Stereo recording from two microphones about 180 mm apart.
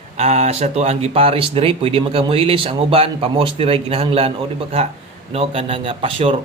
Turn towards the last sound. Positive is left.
turn(degrees=-30)  # may be behind; listen again after turning